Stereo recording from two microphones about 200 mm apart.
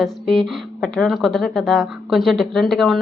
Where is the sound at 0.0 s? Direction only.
Centre (ahead or behind).